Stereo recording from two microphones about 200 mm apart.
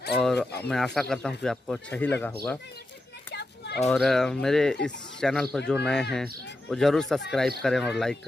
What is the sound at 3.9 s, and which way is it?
Speech, centre (ahead or behind).